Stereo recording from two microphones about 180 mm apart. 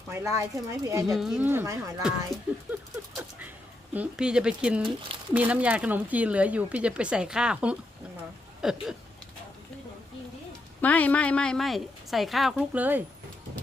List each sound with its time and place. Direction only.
0.1 s speech: 15° right (ahead or behind)
1.0 s a woman's voice: centre (ahead or behind)
1.5 s speech: 15° right (ahead or behind)
2.0 s a woman's voice: 5° right (ahead or behind)
3.9 s a woman's voice: 5° right (ahead or behind)
10.8 s a woman's voice: 10° left (ahead or behind); by 13.0 s 10° right (ahead or behind)